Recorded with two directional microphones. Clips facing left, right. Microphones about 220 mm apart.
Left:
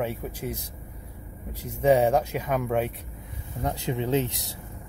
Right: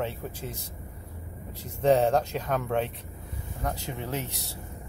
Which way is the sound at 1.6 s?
10° left (ahead or behind).